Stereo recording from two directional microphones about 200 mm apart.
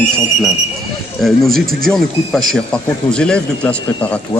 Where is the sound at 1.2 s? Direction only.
Centre (ahead or behind).